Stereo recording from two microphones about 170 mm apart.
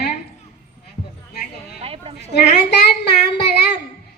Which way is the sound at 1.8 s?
35° right (ahead or behind).